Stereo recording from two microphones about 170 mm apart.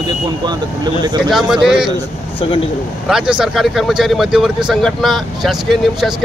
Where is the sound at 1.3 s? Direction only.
5° right (ahead or behind).